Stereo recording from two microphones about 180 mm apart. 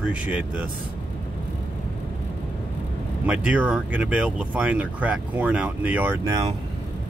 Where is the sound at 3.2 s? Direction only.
5° right (ahead or behind).